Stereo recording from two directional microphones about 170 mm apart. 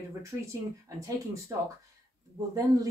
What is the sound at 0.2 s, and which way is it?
Speech, 20° right (ahead or behind).